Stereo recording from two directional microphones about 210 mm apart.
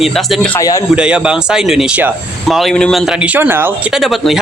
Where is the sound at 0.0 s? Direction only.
Centre (ahead or behind).